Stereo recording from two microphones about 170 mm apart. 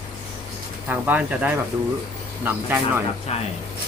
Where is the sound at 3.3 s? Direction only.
40° left (ahead or behind).